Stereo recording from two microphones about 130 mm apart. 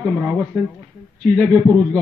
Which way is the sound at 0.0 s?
Centre (ahead or behind).